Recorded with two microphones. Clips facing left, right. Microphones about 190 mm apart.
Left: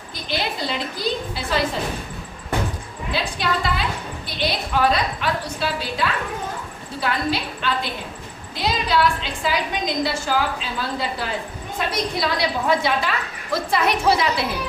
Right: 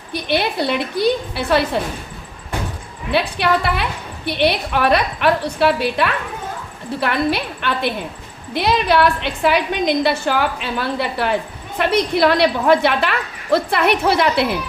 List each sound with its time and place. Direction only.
0.1 s a woman's voice: 65° right (ahead or behind)
3.1 s a woman's voice: 65° right (ahead or behind)